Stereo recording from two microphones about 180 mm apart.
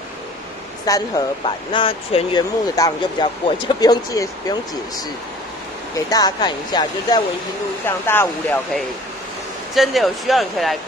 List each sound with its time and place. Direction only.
0.8 s speech: 20° left (ahead or behind)
5.9 s speech: 20° left (ahead or behind)
7.8 s speech: 10° left (ahead or behind)
9.8 s speech: centre (ahead or behind)